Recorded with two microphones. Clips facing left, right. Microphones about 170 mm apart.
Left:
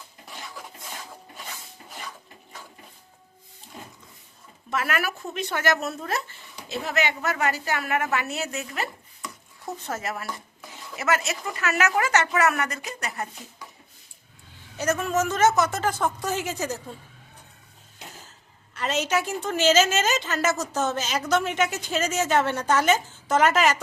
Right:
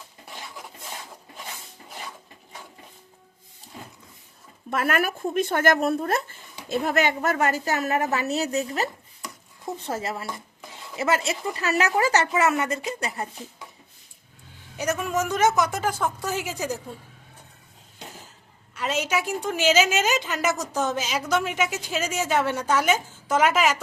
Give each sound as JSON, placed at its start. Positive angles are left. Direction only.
{"t": 4.7, "sound": "speech", "side_deg": -50}
{"t": 14.8, "sound": "a woman's voice", "side_deg": -10}
{"t": 18.7, "sound": "a woman's voice", "side_deg": -10}